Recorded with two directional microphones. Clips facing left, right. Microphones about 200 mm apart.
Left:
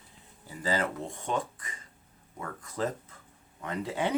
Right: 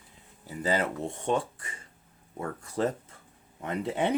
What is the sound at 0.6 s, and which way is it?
Speech, 25° right (ahead or behind).